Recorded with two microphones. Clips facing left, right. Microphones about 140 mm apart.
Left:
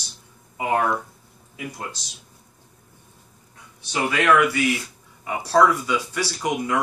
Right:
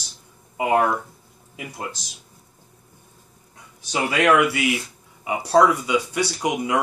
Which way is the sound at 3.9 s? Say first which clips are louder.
Right 1 dB; 20° right (ahead or behind).